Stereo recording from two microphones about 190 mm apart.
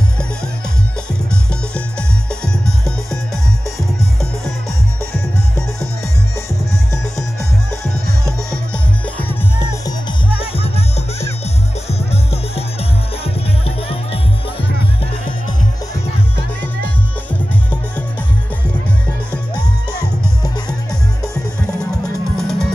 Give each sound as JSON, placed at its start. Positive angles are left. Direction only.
{"t": 10.4, "sound": "music", "side_deg": 30}
{"t": 22.4, "sound": "music", "side_deg": 5}